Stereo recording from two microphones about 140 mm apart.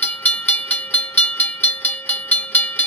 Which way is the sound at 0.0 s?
10° left (ahead or behind).